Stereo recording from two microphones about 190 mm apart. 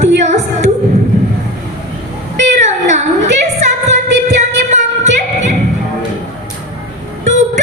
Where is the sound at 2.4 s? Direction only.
40° right (ahead or behind).